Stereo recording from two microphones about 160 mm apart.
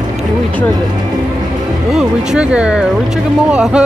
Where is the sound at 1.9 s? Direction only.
5° right (ahead or behind).